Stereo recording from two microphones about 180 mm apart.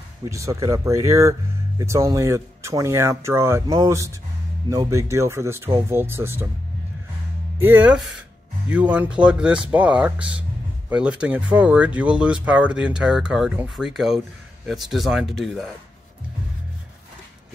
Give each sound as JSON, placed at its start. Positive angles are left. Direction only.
{"t": 0.2, "sound": "speech", "side_deg": -15}
{"t": 7.5, "sound": "speech", "side_deg": -10}